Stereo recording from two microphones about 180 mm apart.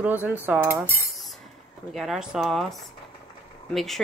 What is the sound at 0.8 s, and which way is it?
Speech, 15° left (ahead or behind).